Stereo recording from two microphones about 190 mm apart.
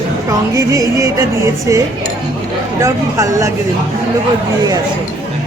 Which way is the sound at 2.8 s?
15° right (ahead or behind).